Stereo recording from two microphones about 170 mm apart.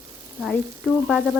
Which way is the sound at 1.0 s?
Centre (ahead or behind).